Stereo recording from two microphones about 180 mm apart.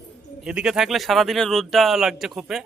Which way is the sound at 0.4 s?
5° right (ahead or behind).